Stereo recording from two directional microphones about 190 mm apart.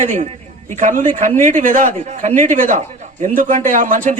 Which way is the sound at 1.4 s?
40° right (ahead or behind).